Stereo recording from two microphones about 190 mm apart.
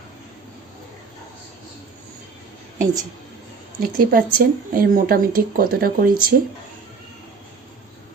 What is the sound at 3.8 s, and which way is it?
Speech, 50° right (ahead or behind).